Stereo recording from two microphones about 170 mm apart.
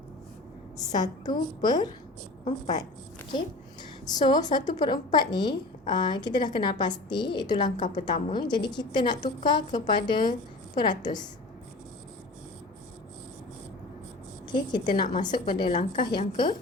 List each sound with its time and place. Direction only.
0.9 s a woman's voice: 25° left (ahead or behind)
4.1 s a woman's voice: 25° left (ahead or behind)
14.4 s a woman's voice: 25° left (ahead or behind); by 16.0 s 45° left (ahead or behind)
16.1 s a woman's voice: 30° left (ahead or behind)